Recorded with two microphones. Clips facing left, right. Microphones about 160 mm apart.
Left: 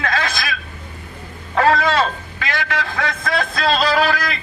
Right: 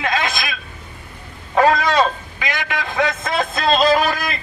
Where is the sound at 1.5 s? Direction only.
15° right (ahead or behind).